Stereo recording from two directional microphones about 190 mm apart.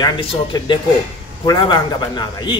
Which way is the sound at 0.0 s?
25° left (ahead or behind).